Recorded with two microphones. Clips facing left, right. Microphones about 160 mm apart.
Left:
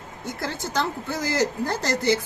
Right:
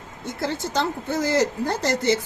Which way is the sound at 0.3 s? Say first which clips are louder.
Right 3 dB; 25° right (ahead or behind).